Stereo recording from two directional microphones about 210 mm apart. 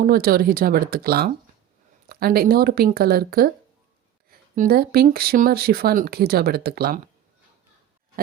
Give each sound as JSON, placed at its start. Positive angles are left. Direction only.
{"t": 0.0, "sound": "speech", "side_deg": -45}